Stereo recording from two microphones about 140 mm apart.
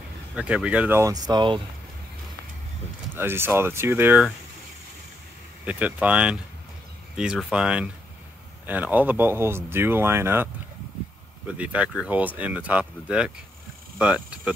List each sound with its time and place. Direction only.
0.4 s speech: 10° right (ahead or behind); by 1.6 s 30° right (ahead or behind)
3.2 s speech: 15° right (ahead or behind)
5.7 s speech: 10° right (ahead or behind)